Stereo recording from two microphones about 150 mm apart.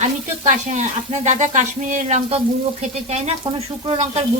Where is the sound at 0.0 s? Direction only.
55° right (ahead or behind).